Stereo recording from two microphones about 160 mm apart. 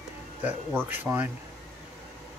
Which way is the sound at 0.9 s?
10° right (ahead or behind).